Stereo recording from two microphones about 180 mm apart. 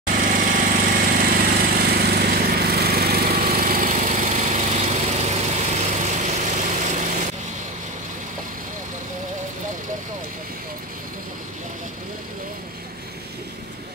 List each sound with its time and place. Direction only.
0.0 s jackhammer: 45° right (ahead or behind)